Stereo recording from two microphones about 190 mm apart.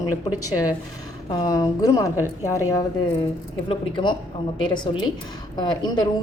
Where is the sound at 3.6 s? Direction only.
25° left (ahead or behind).